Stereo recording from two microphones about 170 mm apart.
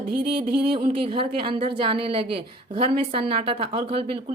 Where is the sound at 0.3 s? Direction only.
30° right (ahead or behind).